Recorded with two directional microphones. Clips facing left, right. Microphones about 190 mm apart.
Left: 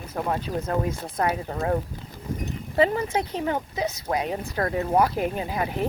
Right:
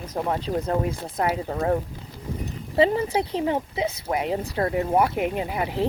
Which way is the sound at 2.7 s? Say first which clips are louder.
Right 2 dB; 30° right (ahead or behind).